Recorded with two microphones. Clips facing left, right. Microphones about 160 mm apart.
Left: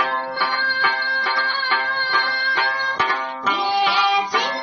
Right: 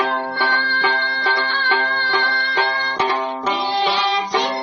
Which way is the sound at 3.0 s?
25° right (ahead or behind).